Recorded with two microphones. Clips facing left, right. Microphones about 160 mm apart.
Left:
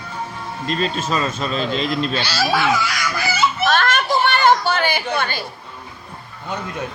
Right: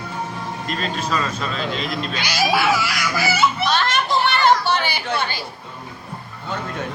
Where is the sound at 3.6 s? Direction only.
50° left (ahead or behind).